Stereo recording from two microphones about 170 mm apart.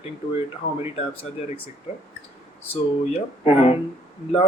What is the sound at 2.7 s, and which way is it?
Speech, 35° left (ahead or behind).